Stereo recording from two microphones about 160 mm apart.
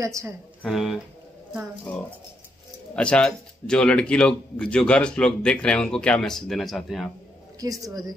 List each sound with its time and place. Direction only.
0.0 s speech: 20° right (ahead or behind)
0.6 s speech: centre (ahead or behind)
3.0 s speech: 5° left (ahead or behind)
7.6 s speech: 20° right (ahead or behind)